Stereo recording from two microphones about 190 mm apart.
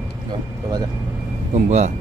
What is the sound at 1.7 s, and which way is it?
Speech, 40° right (ahead or behind).